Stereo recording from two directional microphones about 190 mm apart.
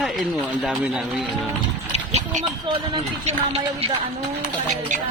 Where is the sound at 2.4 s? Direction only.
25° right (ahead or behind).